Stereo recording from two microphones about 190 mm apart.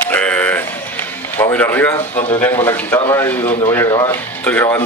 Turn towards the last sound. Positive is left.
turn(degrees=10)  # may be behind; listen again after turning